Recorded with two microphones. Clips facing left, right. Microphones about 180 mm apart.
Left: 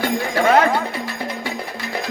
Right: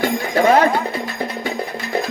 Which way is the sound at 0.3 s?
30° right (ahead or behind).